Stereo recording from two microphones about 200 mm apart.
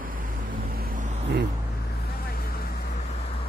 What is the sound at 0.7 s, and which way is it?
Vehicle, 50° right (ahead or behind).